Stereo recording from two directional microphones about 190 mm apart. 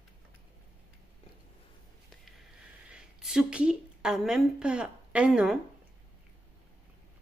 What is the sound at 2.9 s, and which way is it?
A woman's voice, 5° right (ahead or behind).